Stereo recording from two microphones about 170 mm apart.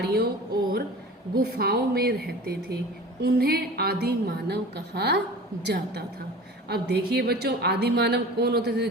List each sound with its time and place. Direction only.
0.0 s a woman's voice: 65° right (ahead or behind)
1.4 s a woman's voice: 65° right (ahead or behind)